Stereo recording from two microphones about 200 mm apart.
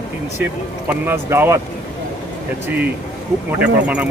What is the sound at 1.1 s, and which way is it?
Speech, 10° right (ahead or behind).